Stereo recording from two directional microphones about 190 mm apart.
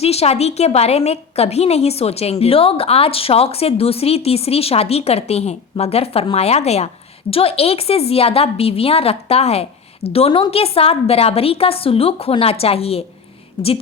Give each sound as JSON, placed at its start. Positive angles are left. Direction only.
{"t": 0.0, "sound": "a woman's voice", "side_deg": 35}